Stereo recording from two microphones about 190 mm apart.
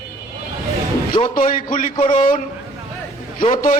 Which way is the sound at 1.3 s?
45° left (ahead or behind).